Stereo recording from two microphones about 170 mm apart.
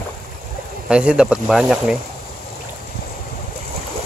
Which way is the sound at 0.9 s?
5° right (ahead or behind).